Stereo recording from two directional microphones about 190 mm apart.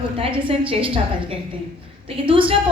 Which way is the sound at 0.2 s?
25° right (ahead or behind).